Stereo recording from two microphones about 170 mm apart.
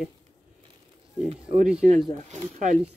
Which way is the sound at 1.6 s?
5° right (ahead or behind).